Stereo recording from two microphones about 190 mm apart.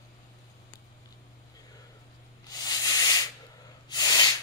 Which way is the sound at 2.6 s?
20° left (ahead or behind).